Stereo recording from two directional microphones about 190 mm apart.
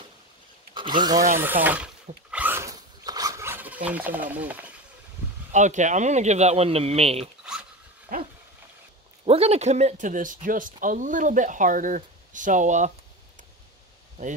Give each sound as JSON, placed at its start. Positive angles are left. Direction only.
{"t": 0.7, "sound": "speech", "side_deg": -25}
{"t": 1.4, "sound": "speech", "side_deg": -10}
{"t": 2.3, "sound": "a sound", "side_deg": -10}
{"t": 4.3, "sound": "speech", "side_deg": -10}
{"t": 5.5, "sound": "speech", "side_deg": -40}
{"t": 7.5, "sound": "a sound", "side_deg": -5}
{"t": 8.1, "sound": "dog", "side_deg": -50}
{"t": 9.2, "sound": "speech", "side_deg": -30}